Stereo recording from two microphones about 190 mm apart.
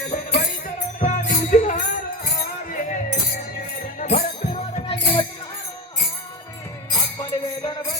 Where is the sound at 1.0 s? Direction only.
40° left (ahead or behind).